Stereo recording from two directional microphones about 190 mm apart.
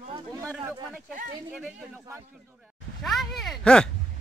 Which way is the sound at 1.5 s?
5° right (ahead or behind).